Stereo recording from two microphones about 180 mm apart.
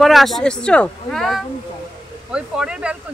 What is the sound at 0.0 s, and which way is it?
Speech, centre (ahead or behind).